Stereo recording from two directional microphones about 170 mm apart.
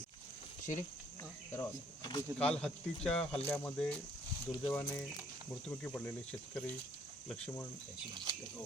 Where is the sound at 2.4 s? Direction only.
5° left (ahead or behind).